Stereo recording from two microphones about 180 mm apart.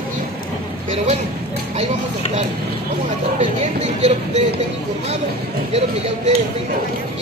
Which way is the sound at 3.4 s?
35° right (ahead or behind).